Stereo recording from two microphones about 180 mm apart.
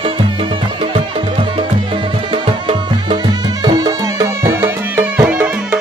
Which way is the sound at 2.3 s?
30° right (ahead or behind).